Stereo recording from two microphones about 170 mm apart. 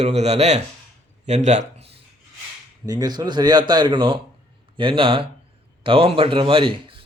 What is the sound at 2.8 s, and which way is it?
A man's voice, 25° right (ahead or behind).